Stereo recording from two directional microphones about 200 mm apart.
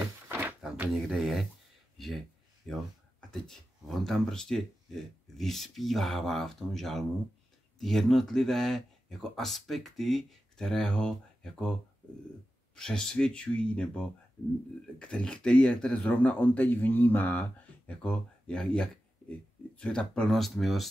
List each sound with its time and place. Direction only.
0.3 s a sound: 10° right (ahead or behind)
2.0 s speech: centre (ahead or behind)
12.7 s speech: 5° left (ahead or behind)